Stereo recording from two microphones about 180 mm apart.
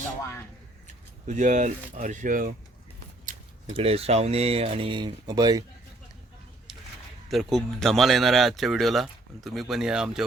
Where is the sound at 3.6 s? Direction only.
30° right (ahead or behind).